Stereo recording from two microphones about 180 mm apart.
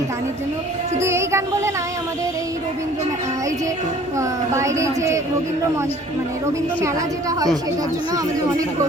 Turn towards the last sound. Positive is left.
turn(degrees=-20)  # may be behind; listen again after turning